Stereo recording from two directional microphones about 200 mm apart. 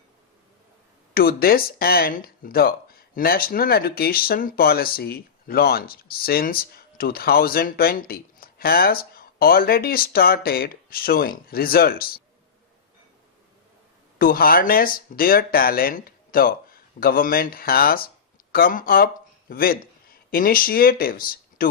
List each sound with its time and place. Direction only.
1.1 s speech: 50° left (ahead or behind)
14.2 s speech: 45° left (ahead or behind)